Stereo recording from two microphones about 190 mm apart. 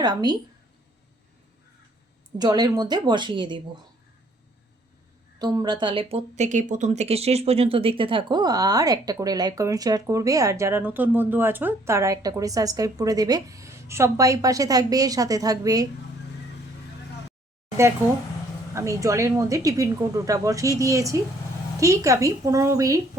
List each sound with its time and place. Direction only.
0.0 s a woman's voice: 20° right (ahead or behind)
2.4 s a woman's voice: 20° right (ahead or behind)
5.4 s a woman's voice: 20° right (ahead or behind)
18.7 s a woman's voice: 15° right (ahead or behind)